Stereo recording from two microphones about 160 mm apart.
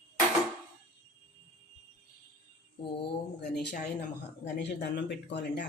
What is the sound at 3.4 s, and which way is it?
A woman's voice, 90° left.